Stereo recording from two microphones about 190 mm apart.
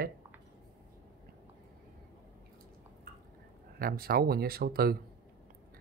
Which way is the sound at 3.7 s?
50° right (ahead or behind).